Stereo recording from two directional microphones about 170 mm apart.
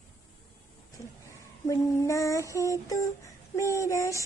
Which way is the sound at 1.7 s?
20° left (ahead or behind).